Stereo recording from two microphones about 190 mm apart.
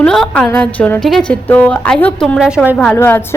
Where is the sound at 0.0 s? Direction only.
5° left (ahead or behind).